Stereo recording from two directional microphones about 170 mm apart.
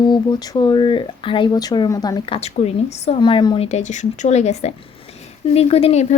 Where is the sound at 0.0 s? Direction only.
25° left (ahead or behind).